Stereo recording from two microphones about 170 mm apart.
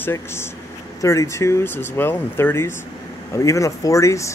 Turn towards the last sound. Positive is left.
turn(degrees=20)  # may be behind; listen again after turning